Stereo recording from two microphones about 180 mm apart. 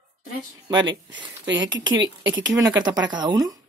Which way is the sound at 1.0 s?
90° right.